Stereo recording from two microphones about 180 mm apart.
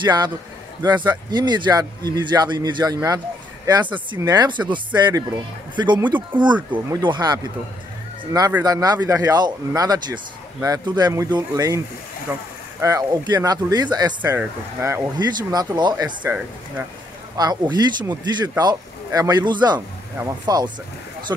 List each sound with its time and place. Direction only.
0.0 s speech: 25° right (ahead or behind)
12.3 s speech: 10° right (ahead or behind)
14.2 s speech: 10° right (ahead or behind)
16.2 s speech: 10° right (ahead or behind)
17.4 s speech: 20° right (ahead or behind)